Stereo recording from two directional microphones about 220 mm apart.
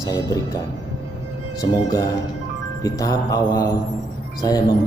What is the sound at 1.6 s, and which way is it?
Speech, 15° left (ahead or behind).